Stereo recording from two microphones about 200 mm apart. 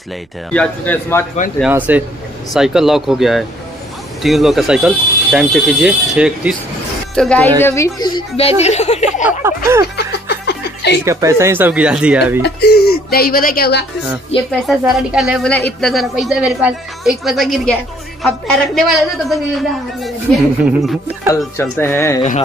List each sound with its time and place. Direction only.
0.5 s speech: 5° left (ahead or behind)
1.6 s speech: 10° right (ahead or behind)
7.2 s a woman's voice: 5° left (ahead or behind); by 9.2 s 35° left (ahead or behind)
9.9 s chuckle: 55° left (ahead or behind)
11.1 s speech: 15° right (ahead or behind)
12.4 s speech: 55° left (ahead or behind)
14.5 s speech: centre (ahead or behind)
21.5 s speech: 10° left (ahead or behind)